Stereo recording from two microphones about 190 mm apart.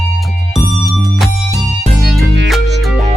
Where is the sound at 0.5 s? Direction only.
Centre (ahead or behind).